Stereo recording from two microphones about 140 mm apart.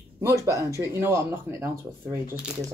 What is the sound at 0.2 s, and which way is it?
Speech, 25° right (ahead or behind).